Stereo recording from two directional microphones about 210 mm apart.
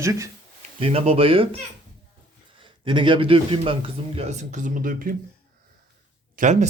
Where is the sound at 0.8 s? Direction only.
25° right (ahead or behind).